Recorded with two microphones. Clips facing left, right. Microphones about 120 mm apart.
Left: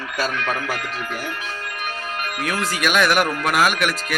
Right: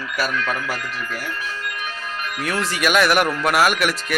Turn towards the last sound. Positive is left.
turn(degrees=0)  # may be behind; listen again after turning